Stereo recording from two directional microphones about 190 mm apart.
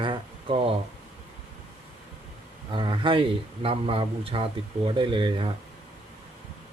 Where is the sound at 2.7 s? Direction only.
25° right (ahead or behind).